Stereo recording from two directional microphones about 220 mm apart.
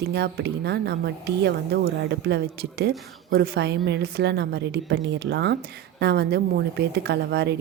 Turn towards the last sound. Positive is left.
turn(degrees=-50)  # may be behind; listen again after turning